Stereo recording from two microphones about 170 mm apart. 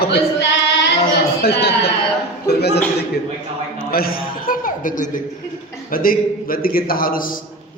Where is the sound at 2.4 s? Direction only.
75° left (ahead or behind).